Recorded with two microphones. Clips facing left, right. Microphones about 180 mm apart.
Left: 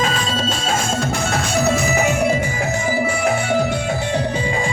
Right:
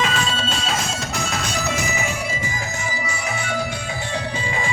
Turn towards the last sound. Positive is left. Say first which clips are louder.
# left 8 dB
turn(degrees=50)  # may be behind; listen again after turning